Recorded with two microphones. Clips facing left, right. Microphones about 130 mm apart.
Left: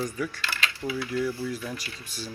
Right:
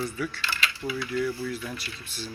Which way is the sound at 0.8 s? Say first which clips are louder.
Left 1 dB; 10° left (ahead or behind).